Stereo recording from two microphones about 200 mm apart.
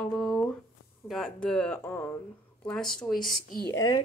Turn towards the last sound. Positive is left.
turn(degrees=50)  # may be behind; listen again after turning